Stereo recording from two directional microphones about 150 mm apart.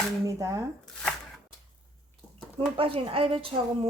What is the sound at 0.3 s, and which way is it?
Speech, 25° right (ahead or behind).